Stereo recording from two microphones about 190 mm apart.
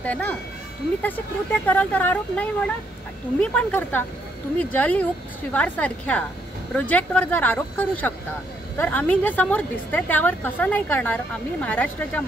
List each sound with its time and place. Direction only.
0.0 s a woman's voice: 10° left (ahead or behind)